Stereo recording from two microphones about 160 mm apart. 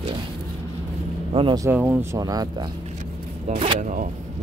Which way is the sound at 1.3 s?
30° right (ahead or behind).